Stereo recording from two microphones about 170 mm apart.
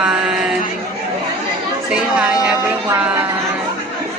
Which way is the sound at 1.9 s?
5° right (ahead or behind).